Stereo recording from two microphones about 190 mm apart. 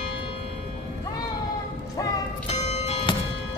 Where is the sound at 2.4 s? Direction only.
35° left (ahead or behind).